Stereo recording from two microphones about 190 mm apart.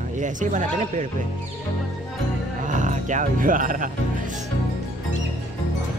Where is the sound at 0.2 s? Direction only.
40° right (ahead or behind).